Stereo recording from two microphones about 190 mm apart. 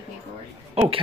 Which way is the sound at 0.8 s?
30° right (ahead or behind).